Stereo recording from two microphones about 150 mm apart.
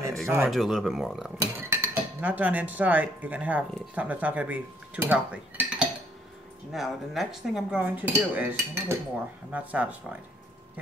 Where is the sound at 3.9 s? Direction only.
10° right (ahead or behind).